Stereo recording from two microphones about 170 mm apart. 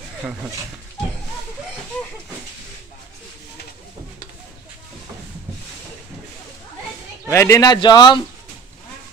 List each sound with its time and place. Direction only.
7.2 s speech: 15° left (ahead or behind)